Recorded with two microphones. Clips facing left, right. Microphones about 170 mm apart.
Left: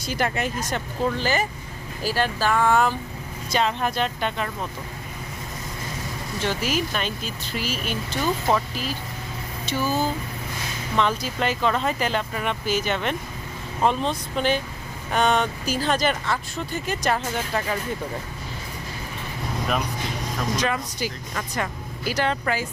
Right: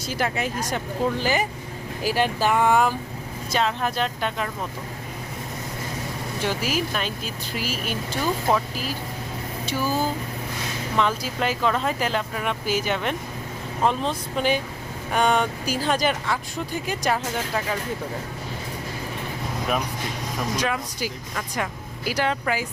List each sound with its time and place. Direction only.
0.0 s speech: 5° right (ahead or behind)
3.5 s speech: centre (ahead or behind)
6.4 s speech: 5° right (ahead or behind)
20.6 s speech: 5° right (ahead or behind)